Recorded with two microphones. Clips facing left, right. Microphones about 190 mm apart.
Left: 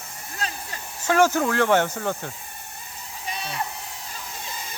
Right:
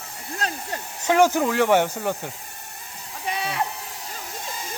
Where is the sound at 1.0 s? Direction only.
15° right (ahead or behind).